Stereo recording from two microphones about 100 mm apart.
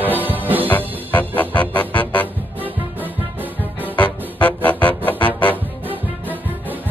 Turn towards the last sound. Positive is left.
turn(degrees=15)  # may be behind; listen again after turning